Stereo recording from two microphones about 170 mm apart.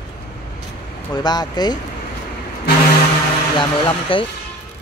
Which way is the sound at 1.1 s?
25° left (ahead or behind).